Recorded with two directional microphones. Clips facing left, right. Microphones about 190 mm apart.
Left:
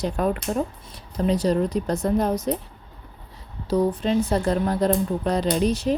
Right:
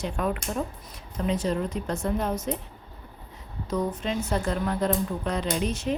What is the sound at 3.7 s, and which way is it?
A woman's voice, 35° left (ahead or behind).